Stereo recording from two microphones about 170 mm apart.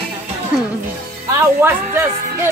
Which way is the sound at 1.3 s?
15° right (ahead or behind).